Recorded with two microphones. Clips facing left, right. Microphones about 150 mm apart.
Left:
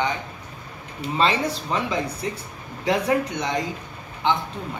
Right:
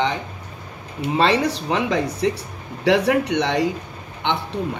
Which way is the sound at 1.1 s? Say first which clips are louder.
Right 4 dB; 75° right (ahead or behind).